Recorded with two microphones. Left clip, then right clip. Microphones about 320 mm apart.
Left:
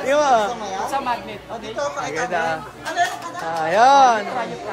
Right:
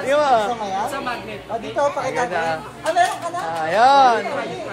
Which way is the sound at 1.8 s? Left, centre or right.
Centre.